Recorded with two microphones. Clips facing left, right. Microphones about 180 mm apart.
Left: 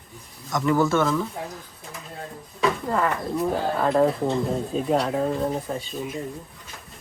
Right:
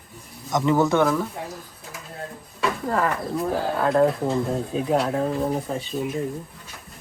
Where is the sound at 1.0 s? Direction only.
5° right (ahead or behind).